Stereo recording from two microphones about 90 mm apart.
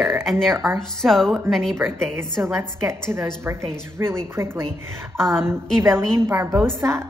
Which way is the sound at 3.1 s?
30° right (ahead or behind).